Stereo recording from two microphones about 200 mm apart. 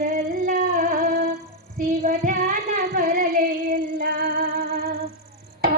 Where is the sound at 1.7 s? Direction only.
40° right (ahead or behind).